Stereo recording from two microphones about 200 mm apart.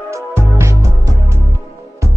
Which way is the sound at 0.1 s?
15° right (ahead or behind).